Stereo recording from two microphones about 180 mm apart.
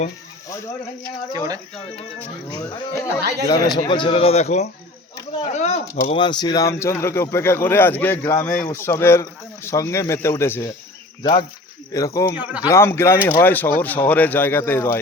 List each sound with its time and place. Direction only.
1.0 s speech: 20° right (ahead or behind)
2.6 s speech: 20° left (ahead or behind); by 4.7 s 40° left (ahead or behind)
5.5 s a sound: 40° left (ahead or behind)
6.1 s speech: 25° left (ahead or behind)
11.2 s speech: 25° left (ahead or behind)
12.4 s speech: 10° right (ahead or behind)
12.6 s speech: 15° left (ahead or behind)